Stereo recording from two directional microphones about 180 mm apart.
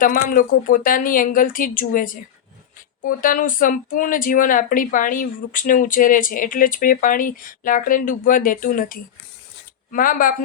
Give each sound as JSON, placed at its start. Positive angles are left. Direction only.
{"t": 0.0, "sound": "speech", "side_deg": 50}